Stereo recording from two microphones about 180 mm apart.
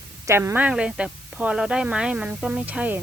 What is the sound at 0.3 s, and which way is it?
Speech, 15° right (ahead or behind).